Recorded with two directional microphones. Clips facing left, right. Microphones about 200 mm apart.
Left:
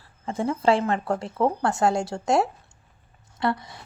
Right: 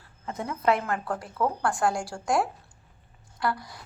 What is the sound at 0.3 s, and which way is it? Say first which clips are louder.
Speech: left 4 dB; 30° left (ahead or behind).